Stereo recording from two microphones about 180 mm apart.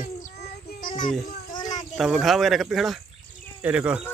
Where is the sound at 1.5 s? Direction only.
25° left (ahead or behind).